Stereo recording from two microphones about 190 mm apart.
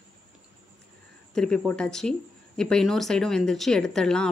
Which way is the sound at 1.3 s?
5° left (ahead or behind).